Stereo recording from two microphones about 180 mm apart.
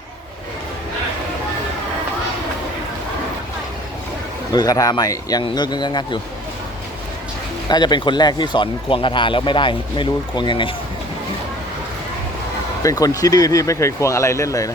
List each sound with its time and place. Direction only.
4.5 s speech: 20° left (ahead or behind)
7.7 s speech: 25° left (ahead or behind)
12.8 s speech: 20° left (ahead or behind)